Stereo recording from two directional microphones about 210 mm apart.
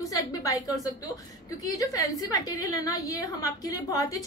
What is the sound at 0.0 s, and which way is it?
A woman's voice, 15° left (ahead or behind).